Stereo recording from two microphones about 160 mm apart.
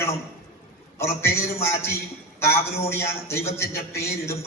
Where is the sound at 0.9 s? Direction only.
15° left (ahead or behind).